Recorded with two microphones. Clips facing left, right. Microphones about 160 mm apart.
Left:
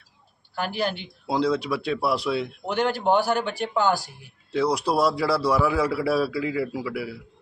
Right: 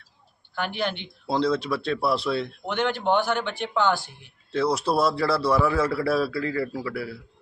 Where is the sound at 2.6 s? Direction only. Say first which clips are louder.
Left 2 dB; 40° left (ahead or behind).